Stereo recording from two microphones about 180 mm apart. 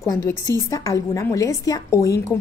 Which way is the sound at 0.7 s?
20° left (ahead or behind).